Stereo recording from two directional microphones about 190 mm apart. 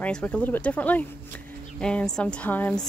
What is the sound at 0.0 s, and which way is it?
Speech, 5° left (ahead or behind).